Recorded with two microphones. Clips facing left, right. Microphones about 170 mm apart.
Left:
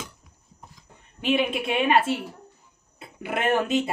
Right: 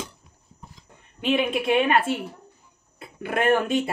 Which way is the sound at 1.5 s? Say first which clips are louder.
Right 1 dB; 25° left (ahead or behind).